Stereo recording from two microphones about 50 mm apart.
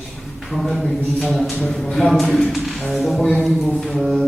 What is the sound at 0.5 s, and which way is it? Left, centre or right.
Speech, centre.